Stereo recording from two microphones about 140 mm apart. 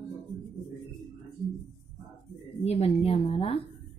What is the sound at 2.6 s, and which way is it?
Speech, 45° left (ahead or behind).